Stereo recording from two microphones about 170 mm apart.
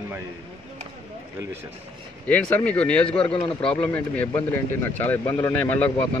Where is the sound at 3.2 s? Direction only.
30° left (ahead or behind).